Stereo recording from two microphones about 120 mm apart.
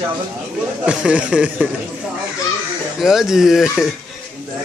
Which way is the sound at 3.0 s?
5° right (ahead or behind).